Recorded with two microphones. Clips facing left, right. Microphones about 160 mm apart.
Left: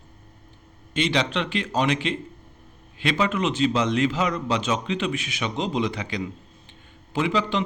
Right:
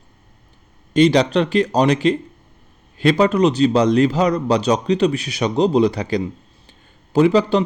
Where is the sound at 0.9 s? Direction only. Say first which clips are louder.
Right 10 dB; 40° right (ahead or behind).